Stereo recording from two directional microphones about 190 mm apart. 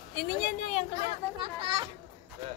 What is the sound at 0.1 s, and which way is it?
Speech, 55° left (ahead or behind).